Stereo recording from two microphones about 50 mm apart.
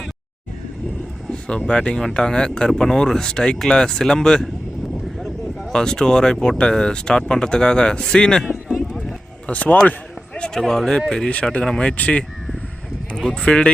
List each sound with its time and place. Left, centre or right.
1.3 s speech: centre
9.5 s speech: left
10.6 s speech: centre
13.3 s speech: centre